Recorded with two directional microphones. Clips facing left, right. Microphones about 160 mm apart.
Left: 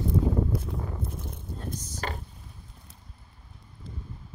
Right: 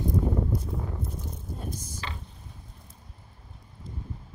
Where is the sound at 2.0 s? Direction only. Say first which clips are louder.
Left 6 dB; 50° left (ahead or behind).